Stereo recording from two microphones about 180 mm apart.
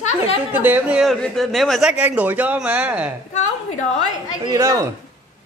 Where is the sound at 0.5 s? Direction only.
10° right (ahead or behind).